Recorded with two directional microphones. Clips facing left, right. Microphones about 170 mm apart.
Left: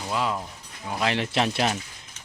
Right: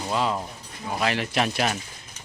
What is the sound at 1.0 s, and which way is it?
Speech, 25° left (ahead or behind).